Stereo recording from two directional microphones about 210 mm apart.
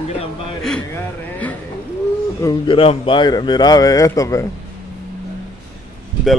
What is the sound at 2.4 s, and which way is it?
Speech, 25° left (ahead or behind).